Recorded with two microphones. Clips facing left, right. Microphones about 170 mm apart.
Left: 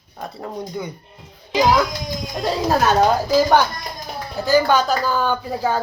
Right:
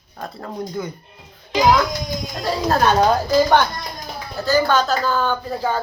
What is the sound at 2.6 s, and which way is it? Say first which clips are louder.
Speech: even; 5° left (ahead or behind).